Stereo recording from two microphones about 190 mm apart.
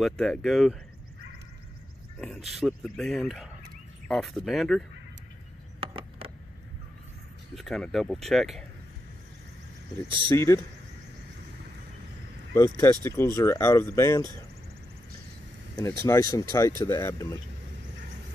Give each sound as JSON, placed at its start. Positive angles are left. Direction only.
{"t": 0.0, "sound": "speech", "side_deg": 0}
{"t": 2.5, "sound": "speech", "side_deg": 0}
{"t": 5.8, "sound": "a sound", "side_deg": -30}
{"t": 7.5, "sound": "speech", "side_deg": 0}
{"t": 10.0, "sound": "speech", "side_deg": -25}
{"t": 10.3, "sound": "speech", "side_deg": 15}
{"t": 12.5, "sound": "speech", "side_deg": 15}
{"t": 16.1, "sound": "speech", "side_deg": 15}